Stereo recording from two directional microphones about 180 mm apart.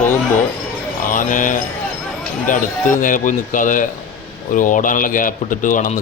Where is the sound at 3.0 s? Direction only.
45° left (ahead or behind).